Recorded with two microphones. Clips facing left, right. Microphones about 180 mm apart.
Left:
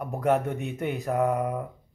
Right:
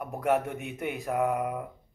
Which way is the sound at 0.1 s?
5° right (ahead or behind).